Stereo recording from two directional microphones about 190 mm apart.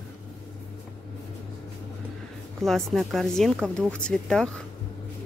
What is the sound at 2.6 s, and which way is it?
Speech, centre (ahead or behind).